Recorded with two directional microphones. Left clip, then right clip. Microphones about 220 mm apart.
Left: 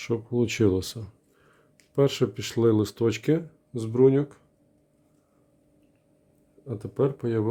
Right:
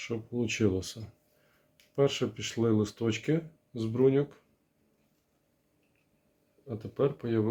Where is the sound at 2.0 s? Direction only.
55° left (ahead or behind).